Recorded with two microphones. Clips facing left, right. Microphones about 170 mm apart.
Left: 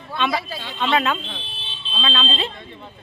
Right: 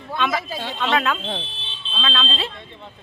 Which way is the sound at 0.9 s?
Centre (ahead or behind).